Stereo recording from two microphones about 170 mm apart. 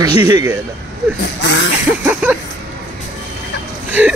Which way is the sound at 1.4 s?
90° left.